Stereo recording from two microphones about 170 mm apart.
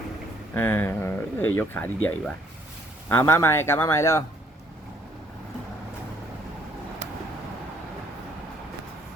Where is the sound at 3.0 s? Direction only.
15° left (ahead or behind).